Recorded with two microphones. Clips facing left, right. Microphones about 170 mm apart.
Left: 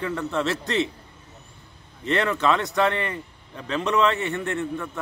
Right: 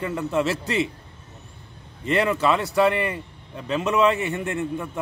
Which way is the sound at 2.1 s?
10° right (ahead or behind).